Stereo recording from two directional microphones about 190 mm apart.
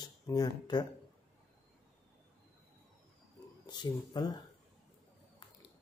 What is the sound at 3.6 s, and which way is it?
Speech, 20° left (ahead or behind).